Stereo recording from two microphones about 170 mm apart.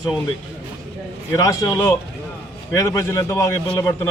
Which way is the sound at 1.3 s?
20° left (ahead or behind).